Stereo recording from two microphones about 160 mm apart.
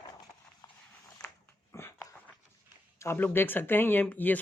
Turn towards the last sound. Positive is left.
turn(degrees=10)  # may be behind; listen again after turning